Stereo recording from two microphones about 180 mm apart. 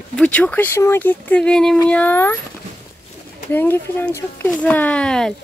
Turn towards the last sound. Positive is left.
turn(degrees=5)  # may be behind; listen again after turning